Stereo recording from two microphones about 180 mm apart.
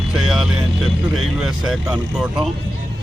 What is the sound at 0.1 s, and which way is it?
Vehicle, 5° right (ahead or behind).